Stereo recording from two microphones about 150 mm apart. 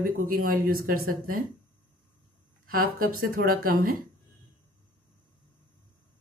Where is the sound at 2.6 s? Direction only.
70° right (ahead or behind).